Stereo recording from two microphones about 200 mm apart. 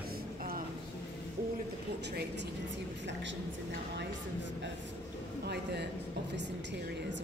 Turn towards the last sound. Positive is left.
turn(degrees=-55)  # may be behind; listen again after turning